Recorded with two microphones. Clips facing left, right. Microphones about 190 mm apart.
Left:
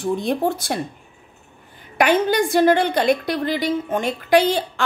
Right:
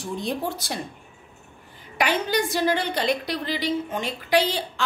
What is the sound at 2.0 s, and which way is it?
A woman's voice, 50° left (ahead or behind).